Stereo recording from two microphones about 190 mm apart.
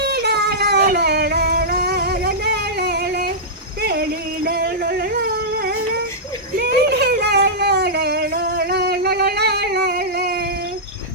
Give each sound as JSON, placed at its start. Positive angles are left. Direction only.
{"t": 0.0, "sound": "child singing", "side_deg": -60}
{"t": 4.4, "sound": "music", "side_deg": -55}
{"t": 5.5, "sound": "a sound", "side_deg": -50}